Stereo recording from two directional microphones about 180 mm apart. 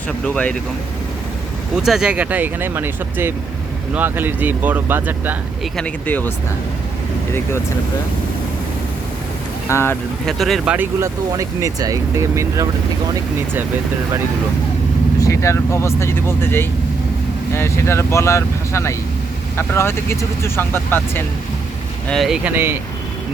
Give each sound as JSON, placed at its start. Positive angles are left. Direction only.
{"t": 0.3, "sound": "speech", "side_deg": 5}
{"t": 1.7, "sound": "speech", "side_deg": -5}
{"t": 5.7, "sound": "speech", "side_deg": 10}
{"t": 9.6, "sound": "speech", "side_deg": 15}
{"t": 10.2, "sound": "speech", "side_deg": 0}
{"t": 10.8, "sound": "speech", "side_deg": -15}
{"t": 15.2, "sound": "speech", "side_deg": 15}
{"t": 22.1, "sound": "speech", "side_deg": 0}